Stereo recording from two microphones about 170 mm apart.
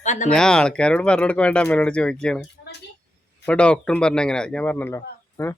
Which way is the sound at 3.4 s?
5° left (ahead or behind).